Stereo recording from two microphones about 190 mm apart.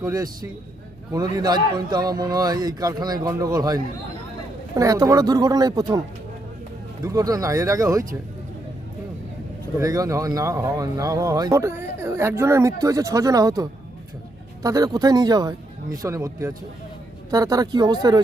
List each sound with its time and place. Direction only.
0.0 s a man's voice: 20° right (ahead or behind)
7.0 s speech: 20° right (ahead or behind)
9.7 s a man's voice: 20° right (ahead or behind)